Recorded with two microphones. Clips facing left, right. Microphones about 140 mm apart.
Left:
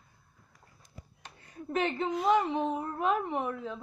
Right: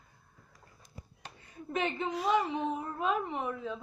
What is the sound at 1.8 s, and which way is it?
Speech, 35° left (ahead or behind).